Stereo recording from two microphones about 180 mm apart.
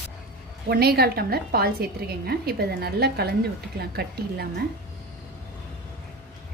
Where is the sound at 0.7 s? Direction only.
60° right (ahead or behind).